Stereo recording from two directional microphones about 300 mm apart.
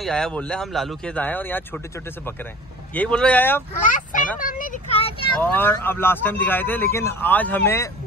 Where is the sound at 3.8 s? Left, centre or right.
Left.